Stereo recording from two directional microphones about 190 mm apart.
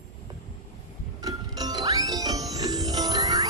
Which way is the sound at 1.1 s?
20° right (ahead or behind).